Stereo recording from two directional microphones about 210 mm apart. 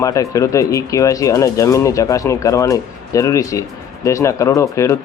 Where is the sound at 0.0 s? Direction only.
15° left (ahead or behind).